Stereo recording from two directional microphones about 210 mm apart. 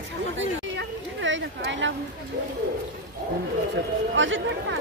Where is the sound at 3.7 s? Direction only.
65° right (ahead or behind).